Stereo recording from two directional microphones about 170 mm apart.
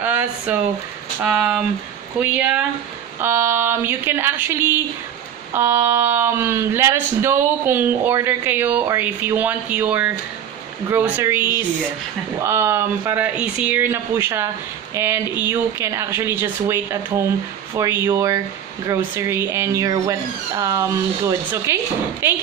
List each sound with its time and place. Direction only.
0.0 s speech: 10° right (ahead or behind)
5.5 s a sound: 15° right (ahead or behind)
5.9 s speech: 15° right (ahead or behind)
12.4 s speech: 15° right (ahead or behind)